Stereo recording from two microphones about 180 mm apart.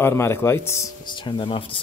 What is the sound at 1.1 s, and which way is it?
Speech, 25° left (ahead or behind).